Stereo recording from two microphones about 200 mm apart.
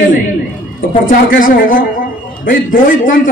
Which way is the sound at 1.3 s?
45° left (ahead or behind).